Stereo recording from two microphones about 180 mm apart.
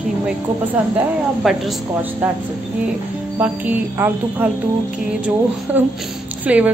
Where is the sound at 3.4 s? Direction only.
10° right (ahead or behind).